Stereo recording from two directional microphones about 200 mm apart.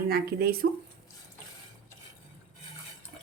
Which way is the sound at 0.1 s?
50° right (ahead or behind).